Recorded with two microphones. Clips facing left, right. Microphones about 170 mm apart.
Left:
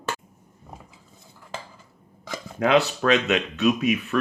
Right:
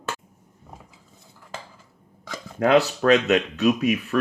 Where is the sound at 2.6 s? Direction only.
40° right (ahead or behind).